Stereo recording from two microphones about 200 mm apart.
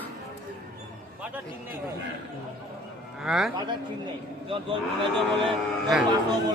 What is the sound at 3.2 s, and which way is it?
Speech, centre (ahead or behind).